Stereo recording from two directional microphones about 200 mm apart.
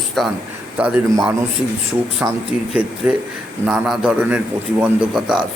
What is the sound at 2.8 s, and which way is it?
Speech, 25° right (ahead or behind).